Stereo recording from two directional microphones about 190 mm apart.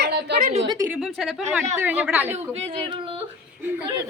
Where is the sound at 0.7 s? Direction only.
15° right (ahead or behind).